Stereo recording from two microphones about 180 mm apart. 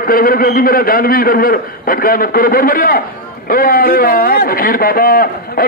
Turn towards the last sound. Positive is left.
turn(degrees=55)  # may be behind; listen again after turning